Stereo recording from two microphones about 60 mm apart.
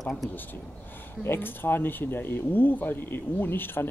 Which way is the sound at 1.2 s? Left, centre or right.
Left.